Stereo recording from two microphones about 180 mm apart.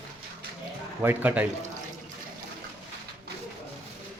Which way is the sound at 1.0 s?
10° right (ahead or behind).